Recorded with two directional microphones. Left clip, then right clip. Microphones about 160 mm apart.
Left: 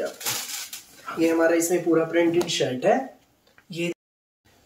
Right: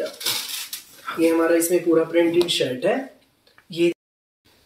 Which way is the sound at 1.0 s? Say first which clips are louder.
Right 2 dB; centre (ahead or behind).